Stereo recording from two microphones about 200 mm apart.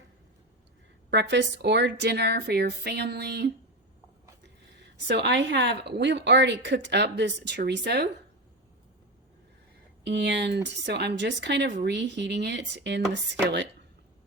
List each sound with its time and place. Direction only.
1.1 s a woman's voice: 60° right (ahead or behind)
5.0 s a woman's voice: 60° right (ahead or behind)
10.0 s a woman's voice: 60° right (ahead or behind)